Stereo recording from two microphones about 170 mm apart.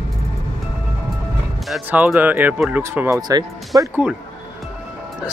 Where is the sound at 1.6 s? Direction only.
5° right (ahead or behind); by 3.9 s 20° right (ahead or behind).